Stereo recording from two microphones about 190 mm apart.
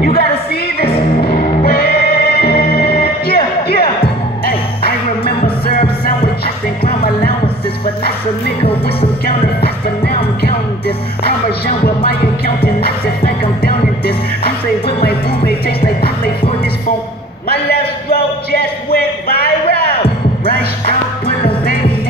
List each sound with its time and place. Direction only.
0.0 s music: 55° left (ahead or behind)
5.7 s music: 50° left (ahead or behind)
9.6 s music: 55° left (ahead or behind)
17.5 s a sound: 55° left (ahead or behind)
20.4 s music: 50° left (ahead or behind)